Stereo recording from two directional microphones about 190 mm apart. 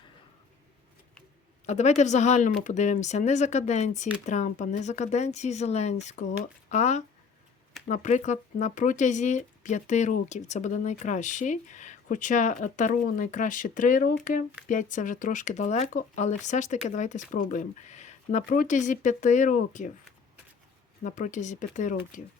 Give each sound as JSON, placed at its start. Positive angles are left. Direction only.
{"t": 1.6, "sound": "speech", "side_deg": 35}
{"t": 21.0, "sound": "speech", "side_deg": 40}